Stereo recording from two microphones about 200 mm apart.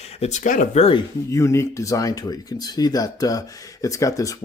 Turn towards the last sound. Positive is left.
turn(degrees=15)  # may be behind; listen again after turning